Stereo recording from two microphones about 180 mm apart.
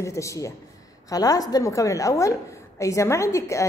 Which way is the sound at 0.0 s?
15° left (ahead or behind).